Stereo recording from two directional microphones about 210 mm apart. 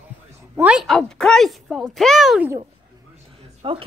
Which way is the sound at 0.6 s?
5° right (ahead or behind).